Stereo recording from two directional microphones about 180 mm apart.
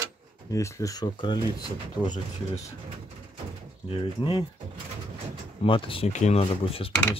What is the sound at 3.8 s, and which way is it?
Speech, 30° left (ahead or behind).